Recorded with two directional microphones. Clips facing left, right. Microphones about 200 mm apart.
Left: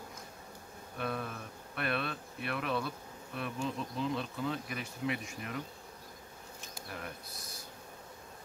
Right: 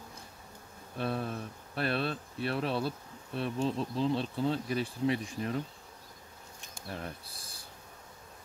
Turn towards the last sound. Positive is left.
turn(degrees=-30)  # may be behind; listen again after turning